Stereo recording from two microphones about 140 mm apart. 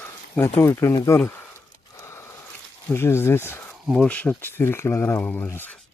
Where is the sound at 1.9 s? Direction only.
20° left (ahead or behind).